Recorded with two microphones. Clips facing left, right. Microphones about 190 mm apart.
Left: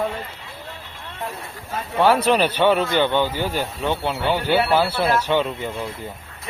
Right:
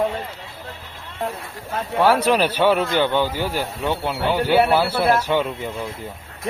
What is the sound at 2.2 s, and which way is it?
Speech, 10° right (ahead or behind).